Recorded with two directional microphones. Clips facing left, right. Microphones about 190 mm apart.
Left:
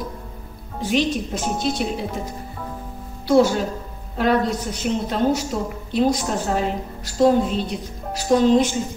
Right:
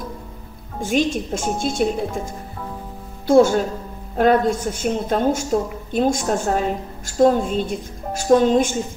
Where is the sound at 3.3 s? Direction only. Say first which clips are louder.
Right 3 dB; 50° right (ahead or behind).